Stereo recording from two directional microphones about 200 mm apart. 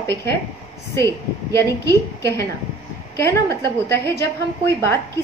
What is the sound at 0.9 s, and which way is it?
A woman's voice, 15° left (ahead or behind).